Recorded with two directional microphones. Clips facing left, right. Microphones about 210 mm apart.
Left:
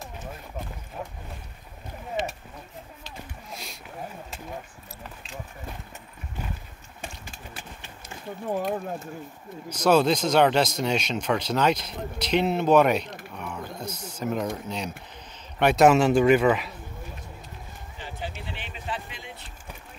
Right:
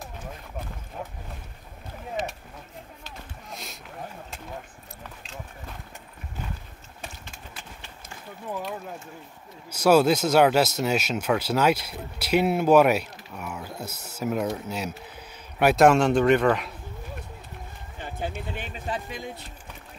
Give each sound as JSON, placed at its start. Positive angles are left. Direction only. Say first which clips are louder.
{"t": 8.5, "sound": "speech", "louder": "left 5 dB", "side_deg": 40}
{"t": 9.7, "sound": "a man's voice", "louder": "right 2 dB", "side_deg": -10}
{"t": 17.9, "sound": "a sound", "louder": "right 4 dB", "side_deg": -50}